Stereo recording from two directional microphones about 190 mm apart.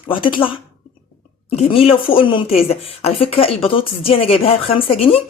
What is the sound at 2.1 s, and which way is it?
Speech, 30° left (ahead or behind).